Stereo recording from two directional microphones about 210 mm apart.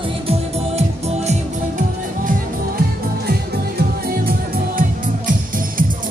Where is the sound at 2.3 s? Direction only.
45° right (ahead or behind).